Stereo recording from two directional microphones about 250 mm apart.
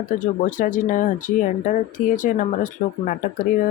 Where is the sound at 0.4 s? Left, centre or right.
Left.